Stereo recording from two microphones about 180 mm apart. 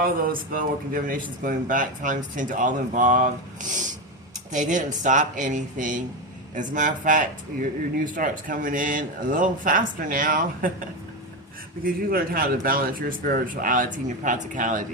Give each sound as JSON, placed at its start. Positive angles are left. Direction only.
{"t": 0.0, "sound": "speech", "side_deg": -50}
{"t": 4.5, "sound": "speech", "side_deg": -45}
{"t": 11.8, "sound": "speech", "side_deg": -55}